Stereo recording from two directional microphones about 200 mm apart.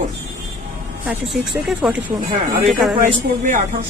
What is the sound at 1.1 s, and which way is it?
A woman's voice, 5° right (ahead or behind).